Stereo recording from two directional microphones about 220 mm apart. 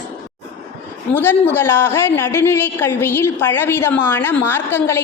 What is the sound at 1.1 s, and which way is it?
A woman's voice, 10° left (ahead or behind).